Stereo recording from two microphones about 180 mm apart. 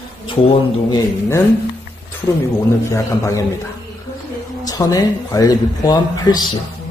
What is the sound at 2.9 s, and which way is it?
Speech, 15° left (ahead or behind).